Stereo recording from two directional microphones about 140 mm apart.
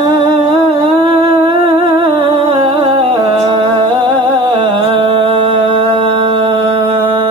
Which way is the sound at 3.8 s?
35° right (ahead or behind).